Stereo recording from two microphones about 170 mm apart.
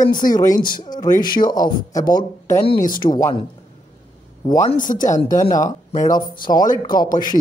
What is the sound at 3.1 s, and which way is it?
Speech, 25° left (ahead or behind).